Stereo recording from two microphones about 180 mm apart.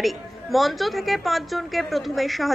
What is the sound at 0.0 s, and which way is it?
A woman's voice, centre (ahead or behind).